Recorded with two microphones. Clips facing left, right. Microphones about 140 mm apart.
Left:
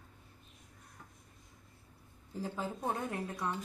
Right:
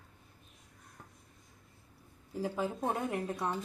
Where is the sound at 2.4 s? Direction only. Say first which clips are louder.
Right 4 dB; 15° right (ahead or behind).